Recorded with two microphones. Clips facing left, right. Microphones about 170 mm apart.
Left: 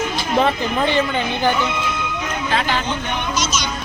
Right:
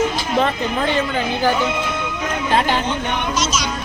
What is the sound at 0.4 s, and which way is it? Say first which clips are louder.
Speech: left 1 dB; centre (ahead or behind).